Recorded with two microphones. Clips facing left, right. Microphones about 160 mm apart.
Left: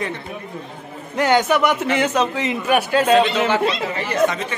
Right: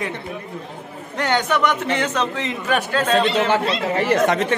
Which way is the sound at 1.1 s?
10° left (ahead or behind).